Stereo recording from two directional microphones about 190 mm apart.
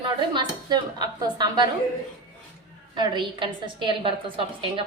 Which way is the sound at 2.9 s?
25° right (ahead or behind).